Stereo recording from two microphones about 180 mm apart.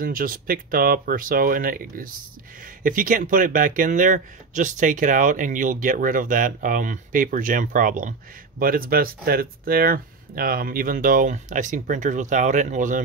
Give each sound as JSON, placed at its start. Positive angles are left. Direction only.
{"t": 0.0, "sound": "speech", "side_deg": -50}